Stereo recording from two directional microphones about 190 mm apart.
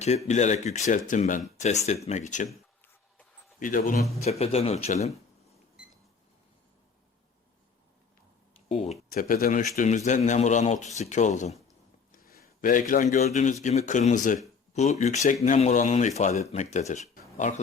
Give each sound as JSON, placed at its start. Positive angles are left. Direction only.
{"t": 0.3, "sound": "speech", "side_deg": 35}
{"t": 3.6, "sound": "speech", "side_deg": 45}
{"t": 4.2, "sound": "speech", "side_deg": 35}
{"t": 8.7, "sound": "speech", "side_deg": 35}
{"t": 9.0, "sound": "speech", "side_deg": 45}
{"t": 12.1, "sound": "a sound", "side_deg": 50}
{"t": 12.9, "sound": "speech", "side_deg": 40}